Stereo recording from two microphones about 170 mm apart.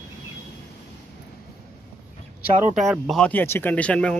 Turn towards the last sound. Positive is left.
turn(degrees=5)  # may be behind; listen again after turning